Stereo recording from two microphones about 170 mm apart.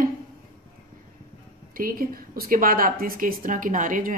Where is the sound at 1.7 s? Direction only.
55° right (ahead or behind).